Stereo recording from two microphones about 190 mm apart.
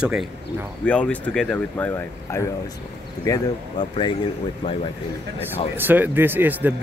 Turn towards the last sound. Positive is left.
turn(degrees=-10)  # may be behind; listen again after turning